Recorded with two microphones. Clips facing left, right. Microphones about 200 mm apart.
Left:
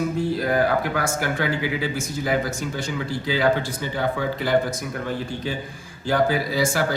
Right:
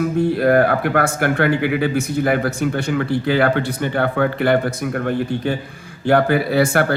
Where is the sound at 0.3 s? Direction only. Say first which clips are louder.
Right 6 dB; 60° right (ahead or behind).